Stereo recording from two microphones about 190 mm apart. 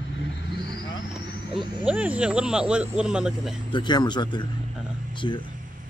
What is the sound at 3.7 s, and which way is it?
Speech, 25° left (ahead or behind).